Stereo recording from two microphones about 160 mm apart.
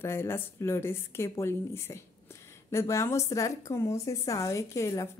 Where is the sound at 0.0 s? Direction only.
15° left (ahead or behind).